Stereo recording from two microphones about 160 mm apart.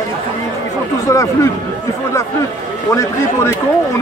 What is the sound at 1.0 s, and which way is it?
Speech, 20° left (ahead or behind).